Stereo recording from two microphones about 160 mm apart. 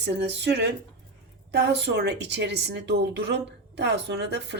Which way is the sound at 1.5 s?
90° right.